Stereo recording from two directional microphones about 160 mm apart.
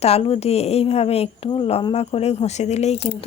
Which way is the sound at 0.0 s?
40° left (ahead or behind).